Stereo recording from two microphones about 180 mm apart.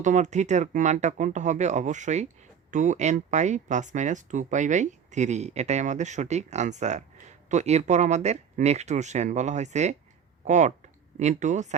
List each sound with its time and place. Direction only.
0.0 s speech: 40° right (ahead or behind)